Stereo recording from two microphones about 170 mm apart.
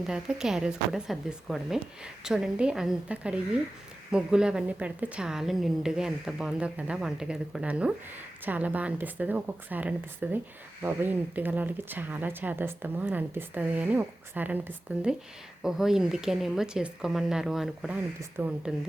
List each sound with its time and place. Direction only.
0.1 s a woman's voice: 5° right (ahead or behind)